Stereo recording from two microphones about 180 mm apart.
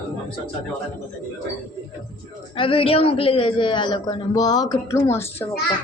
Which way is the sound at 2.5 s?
30° left (ahead or behind).